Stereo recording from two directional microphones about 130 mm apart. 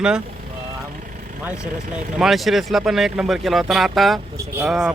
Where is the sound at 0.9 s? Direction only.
90° right.